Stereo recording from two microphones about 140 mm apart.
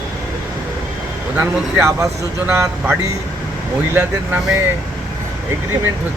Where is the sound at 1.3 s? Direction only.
15° right (ahead or behind).